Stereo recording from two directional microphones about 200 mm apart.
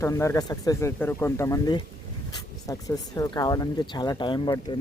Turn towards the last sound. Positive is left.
turn(degrees=20)  # may be behind; listen again after turning